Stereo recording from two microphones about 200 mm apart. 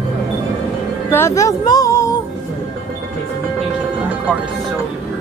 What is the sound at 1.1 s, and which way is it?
Music, 15° left (ahead or behind).